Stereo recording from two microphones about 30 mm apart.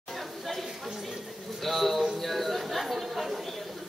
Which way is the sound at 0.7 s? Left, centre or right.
Centre.